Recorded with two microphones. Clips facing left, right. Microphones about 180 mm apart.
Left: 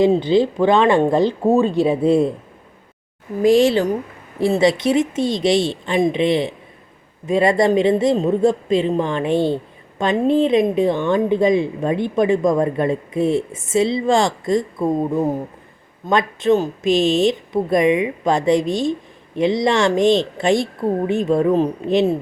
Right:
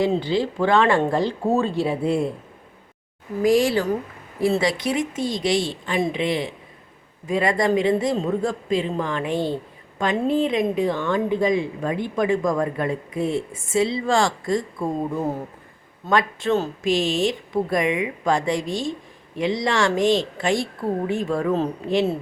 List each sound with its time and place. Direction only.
0.0 s a woman's voice: 20° left (ahead or behind)
3.4 s a woman's voice: 25° left (ahead or behind)